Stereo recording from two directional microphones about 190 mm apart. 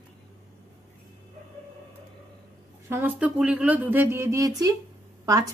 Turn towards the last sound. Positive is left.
turn(degrees=-15)  # may be behind; listen again after turning